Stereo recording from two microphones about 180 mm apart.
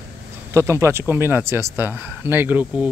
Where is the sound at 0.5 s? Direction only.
15° right (ahead or behind).